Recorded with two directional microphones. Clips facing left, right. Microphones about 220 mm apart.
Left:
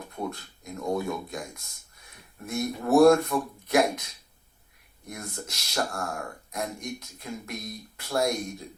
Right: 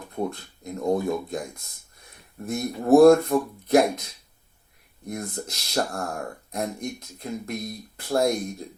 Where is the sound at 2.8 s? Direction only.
35° right (ahead or behind).